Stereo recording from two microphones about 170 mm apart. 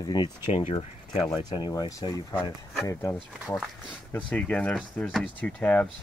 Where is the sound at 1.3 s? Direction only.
25° left (ahead or behind).